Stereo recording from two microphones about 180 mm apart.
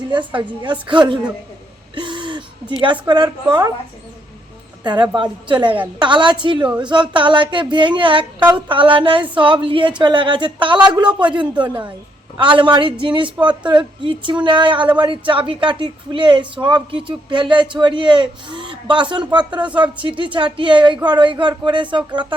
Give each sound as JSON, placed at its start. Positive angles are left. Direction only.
{"t": 0.3, "sound": "a woman's voice", "side_deg": -25}
{"t": 2.0, "sound": "a sound", "side_deg": -25}
{"t": 2.8, "sound": "a woman's voice", "side_deg": -25}
{"t": 4.8, "sound": "a woman's voice", "side_deg": -25}